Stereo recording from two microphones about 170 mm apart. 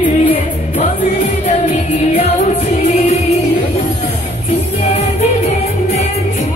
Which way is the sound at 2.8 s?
40° left (ahead or behind).